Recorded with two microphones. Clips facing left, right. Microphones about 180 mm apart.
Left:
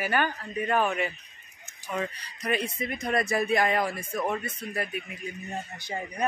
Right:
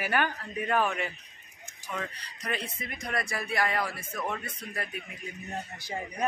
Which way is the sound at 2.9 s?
25° left (ahead or behind).